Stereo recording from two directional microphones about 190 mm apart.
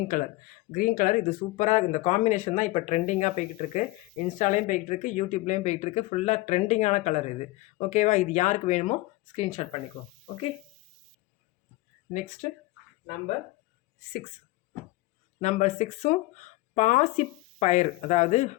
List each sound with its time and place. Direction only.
0.7 s speech: 45° left (ahead or behind)
15.4 s speech: 35° left (ahead or behind)